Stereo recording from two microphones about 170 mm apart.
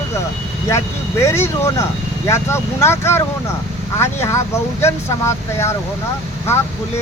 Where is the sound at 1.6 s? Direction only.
15° left (ahead or behind).